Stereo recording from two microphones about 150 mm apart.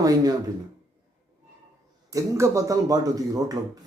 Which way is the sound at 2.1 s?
20° right (ahead or behind).